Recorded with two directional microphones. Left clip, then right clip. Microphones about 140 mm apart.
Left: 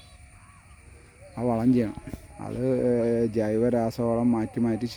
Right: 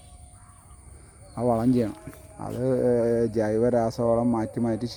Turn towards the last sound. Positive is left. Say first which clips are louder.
# even
turn(degrees=30)  # may be behind; listen again after turning